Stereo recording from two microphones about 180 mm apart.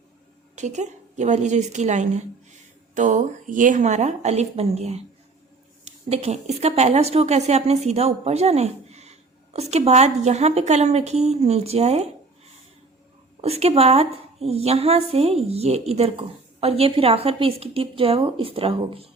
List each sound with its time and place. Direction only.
0.5 s a woman's voice: 40° right (ahead or behind)
13.4 s a woman's voice: 35° right (ahead or behind)